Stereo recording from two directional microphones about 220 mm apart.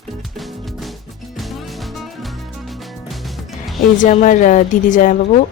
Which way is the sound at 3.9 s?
35° left (ahead or behind).